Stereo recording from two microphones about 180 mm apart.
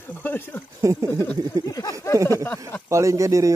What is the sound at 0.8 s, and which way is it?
Speech, 15° right (ahead or behind).